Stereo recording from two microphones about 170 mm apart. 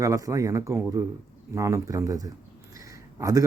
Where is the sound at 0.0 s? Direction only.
20° right (ahead or behind).